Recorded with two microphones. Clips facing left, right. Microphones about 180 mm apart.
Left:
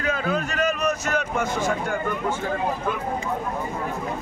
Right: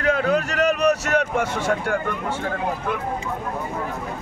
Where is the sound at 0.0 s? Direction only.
70° right (ahead or behind).